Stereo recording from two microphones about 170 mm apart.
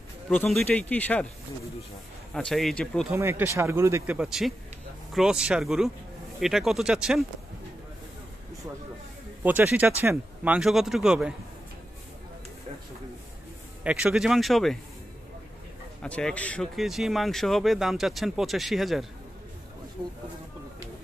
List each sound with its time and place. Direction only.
0.3 s speech: 5° left (ahead or behind)
2.3 s speech: centre (ahead or behind)
3.1 s speech: 15° right (ahead or behind)
9.4 s speech: 10° right (ahead or behind)
13.8 s speech: 5° right (ahead or behind)
16.0 s speech: 5° left (ahead or behind)